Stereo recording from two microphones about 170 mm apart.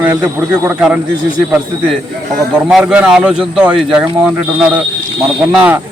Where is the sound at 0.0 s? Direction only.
10° right (ahead or behind).